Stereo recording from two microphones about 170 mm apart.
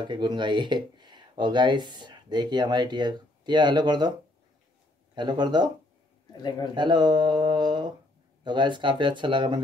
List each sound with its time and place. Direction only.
0.0 s speech: 25° right (ahead or behind)
5.1 s speech: 25° right (ahead or behind)
6.7 s speech: 25° right (ahead or behind)